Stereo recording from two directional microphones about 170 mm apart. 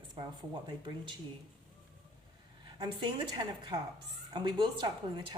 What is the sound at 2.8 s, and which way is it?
Speech, 25° right (ahead or behind).